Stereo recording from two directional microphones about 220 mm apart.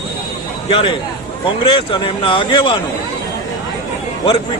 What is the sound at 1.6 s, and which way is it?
A man's voice, 25° left (ahead or behind).